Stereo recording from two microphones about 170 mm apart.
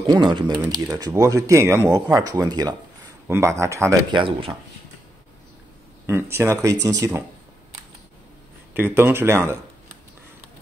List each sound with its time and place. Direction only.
0.0 s speech: 30° right (ahead or behind)
4.2 s speech: 35° right (ahead or behind)
6.0 s speech: 15° right (ahead or behind)
8.7 s speech: 10° right (ahead or behind)